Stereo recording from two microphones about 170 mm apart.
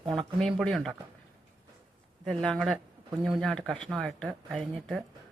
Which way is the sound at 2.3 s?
5° left (ahead or behind).